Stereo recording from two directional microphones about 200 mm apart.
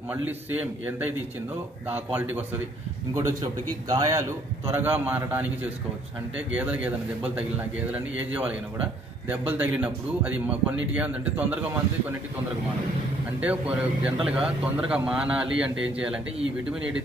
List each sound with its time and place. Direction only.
0.1 s speech: 10° right (ahead or behind)
3.9 s a man's voice: 15° right (ahead or behind)